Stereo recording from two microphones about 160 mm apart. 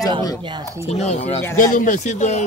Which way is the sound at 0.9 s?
40° left (ahead or behind).